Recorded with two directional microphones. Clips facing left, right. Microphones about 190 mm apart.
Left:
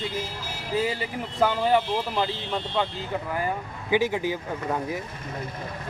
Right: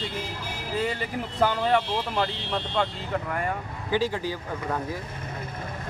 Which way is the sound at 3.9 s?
15° left (ahead or behind).